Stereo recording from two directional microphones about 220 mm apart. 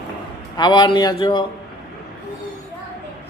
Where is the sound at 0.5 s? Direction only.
20° left (ahead or behind).